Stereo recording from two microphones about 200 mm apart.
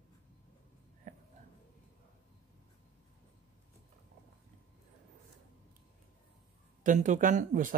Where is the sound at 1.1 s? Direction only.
40° right (ahead or behind).